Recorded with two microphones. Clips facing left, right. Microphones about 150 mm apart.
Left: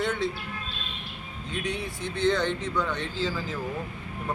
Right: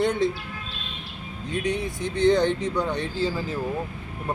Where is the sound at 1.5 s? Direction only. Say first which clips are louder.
Right 5 dB; 15° right (ahead or behind).